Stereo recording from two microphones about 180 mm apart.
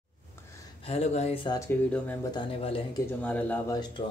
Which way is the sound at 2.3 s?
30° left (ahead or behind).